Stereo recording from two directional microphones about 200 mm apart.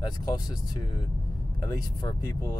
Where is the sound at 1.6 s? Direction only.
20° left (ahead or behind).